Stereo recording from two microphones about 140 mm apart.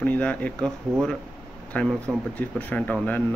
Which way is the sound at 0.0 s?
10° left (ahead or behind).